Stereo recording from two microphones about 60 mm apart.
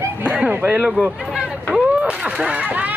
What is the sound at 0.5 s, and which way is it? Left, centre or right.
Speech, right.